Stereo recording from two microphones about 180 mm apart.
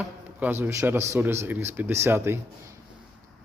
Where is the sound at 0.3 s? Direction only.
10° right (ahead or behind).